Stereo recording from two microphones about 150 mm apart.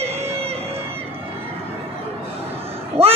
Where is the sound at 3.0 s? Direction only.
40° right (ahead or behind).